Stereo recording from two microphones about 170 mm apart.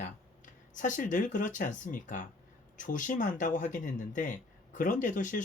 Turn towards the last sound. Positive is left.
turn(degrees=50)  # may be behind; listen again after turning